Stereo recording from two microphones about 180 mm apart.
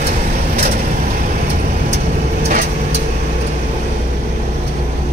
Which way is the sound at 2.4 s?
45° right (ahead or behind).